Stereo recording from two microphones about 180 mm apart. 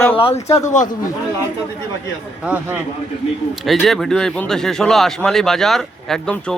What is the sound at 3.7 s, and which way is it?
Speech, centre (ahead or behind).